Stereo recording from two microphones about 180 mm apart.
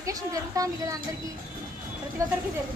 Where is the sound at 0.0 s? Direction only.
20° right (ahead or behind).